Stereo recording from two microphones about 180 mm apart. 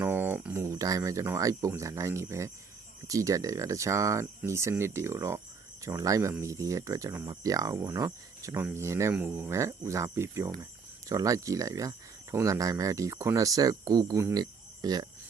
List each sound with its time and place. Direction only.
0.0 s speech: 10° right (ahead or behind)